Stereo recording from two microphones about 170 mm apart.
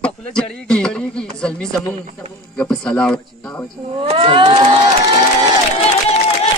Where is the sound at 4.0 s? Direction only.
35° right (ahead or behind).